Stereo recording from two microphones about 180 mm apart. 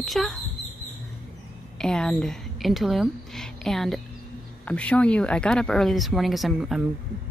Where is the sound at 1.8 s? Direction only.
5° left (ahead or behind).